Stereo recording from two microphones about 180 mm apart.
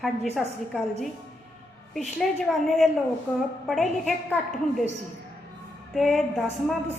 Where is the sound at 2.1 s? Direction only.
Centre (ahead or behind).